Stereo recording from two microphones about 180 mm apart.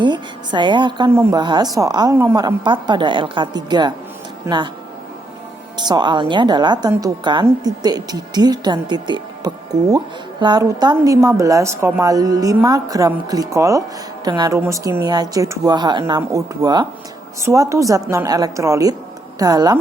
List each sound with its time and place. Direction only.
0.0 s a sound: 25° right (ahead or behind)
1.1 s a woman's voice: 25° right (ahead or behind)
5.7 s a woman's voice: 25° right (ahead or behind)